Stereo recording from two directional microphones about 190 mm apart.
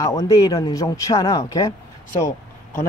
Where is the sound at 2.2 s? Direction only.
15° left (ahead or behind).